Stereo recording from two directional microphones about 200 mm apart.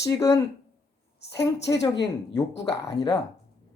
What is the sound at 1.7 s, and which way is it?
Speech, 20° left (ahead or behind).